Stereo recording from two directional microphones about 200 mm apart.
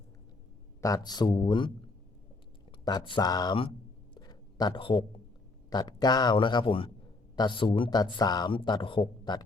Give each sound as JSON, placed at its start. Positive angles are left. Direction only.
{"t": 0.8, "sound": "speech", "side_deg": 15}
{"t": 2.8, "sound": "speech", "side_deg": 20}
{"t": 4.1, "sound": "a sound", "side_deg": 20}
{"t": 5.7, "sound": "speech", "side_deg": 20}